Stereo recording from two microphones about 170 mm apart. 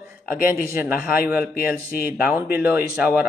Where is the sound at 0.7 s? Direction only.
15° right (ahead or behind).